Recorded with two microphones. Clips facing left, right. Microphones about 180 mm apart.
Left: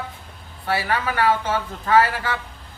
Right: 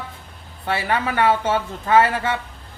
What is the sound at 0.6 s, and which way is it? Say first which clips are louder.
Speech: right 1 dB; 25° right (ahead or behind).